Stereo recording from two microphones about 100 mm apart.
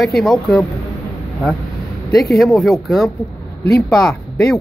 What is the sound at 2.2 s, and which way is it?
Speech, centre (ahead or behind).